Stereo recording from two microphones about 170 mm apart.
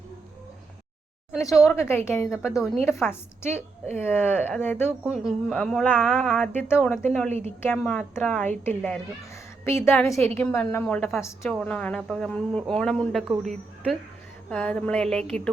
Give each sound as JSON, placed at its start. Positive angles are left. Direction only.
{"t": 1.3, "sound": "speech", "side_deg": 0}
{"t": 1.7, "sound": "a woman's voice", "side_deg": 15}
{"t": 5.0, "sound": "a woman's voice", "side_deg": -5}
{"t": 7.3, "sound": "a woman's voice", "side_deg": -40}
{"t": 7.8, "sound": "a woman's voice", "side_deg": 0}
{"t": 14.5, "sound": "speech", "side_deg": 5}